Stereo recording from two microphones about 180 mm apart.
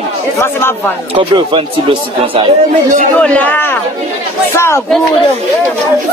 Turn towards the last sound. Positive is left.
turn(degrees=15)  # may be behind; listen again after turning